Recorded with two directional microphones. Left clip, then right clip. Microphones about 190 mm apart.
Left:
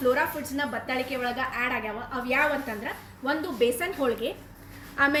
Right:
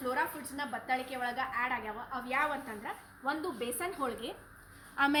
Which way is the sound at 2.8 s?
10° right (ahead or behind).